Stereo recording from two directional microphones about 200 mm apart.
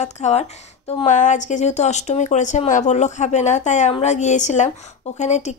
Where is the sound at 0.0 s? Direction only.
35° left (ahead or behind).